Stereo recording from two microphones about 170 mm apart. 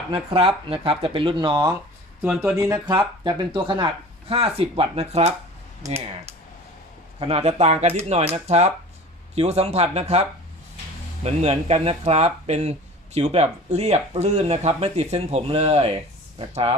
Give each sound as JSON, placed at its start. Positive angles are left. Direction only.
{"t": 0.1, "sound": "speech", "side_deg": -30}
{"t": 2.2, "sound": "speech", "side_deg": -5}
{"t": 2.8, "sound": "speech", "side_deg": -25}
{"t": 7.2, "sound": "speech", "side_deg": -35}